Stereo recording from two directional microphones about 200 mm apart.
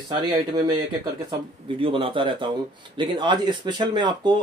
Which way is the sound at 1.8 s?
25° right (ahead or behind).